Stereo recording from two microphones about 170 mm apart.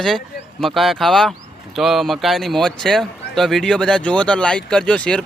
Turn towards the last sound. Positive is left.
turn(degrees=5)  # may be behind; listen again after turning